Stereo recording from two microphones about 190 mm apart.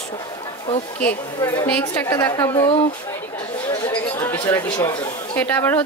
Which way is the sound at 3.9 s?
10° left (ahead or behind).